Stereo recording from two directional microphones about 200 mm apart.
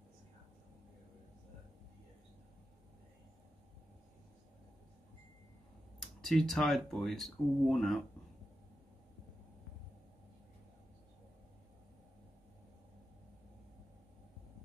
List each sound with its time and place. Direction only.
5.9 s speech: centre (ahead or behind)